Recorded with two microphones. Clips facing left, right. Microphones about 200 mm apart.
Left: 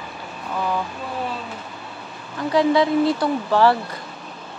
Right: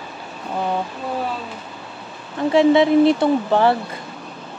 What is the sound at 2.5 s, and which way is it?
Speech, 25° right (ahead or behind).